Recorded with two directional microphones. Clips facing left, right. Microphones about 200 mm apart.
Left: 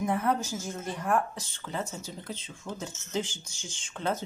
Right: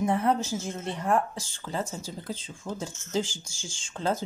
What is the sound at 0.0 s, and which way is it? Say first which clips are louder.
Speech: right 3 dB; 30° right (ahead or behind).